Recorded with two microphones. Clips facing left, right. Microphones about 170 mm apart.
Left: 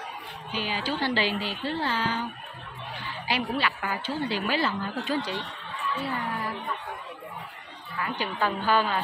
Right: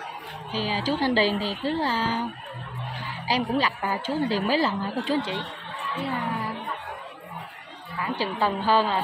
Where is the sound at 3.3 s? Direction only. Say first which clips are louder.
Right 4 dB; 35° right (ahead or behind).